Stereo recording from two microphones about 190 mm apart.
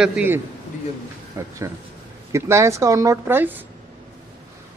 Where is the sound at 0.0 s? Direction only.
5° right (ahead or behind).